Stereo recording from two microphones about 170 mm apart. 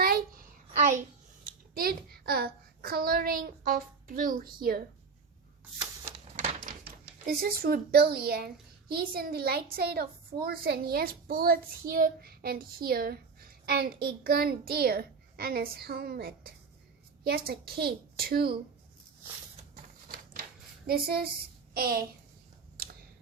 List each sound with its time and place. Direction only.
0.0 s a sound: 60° right (ahead or behind)
1.7 s a child's voice: 60° right (ahead or behind)
6.1 s a sound: 40° right (ahead or behind)
6.8 s a woman's voice: 65° right (ahead or behind)
19.7 s typewriter: 55° right (ahead or behind)
20.8 s a woman's voice: 65° right (ahead or behind)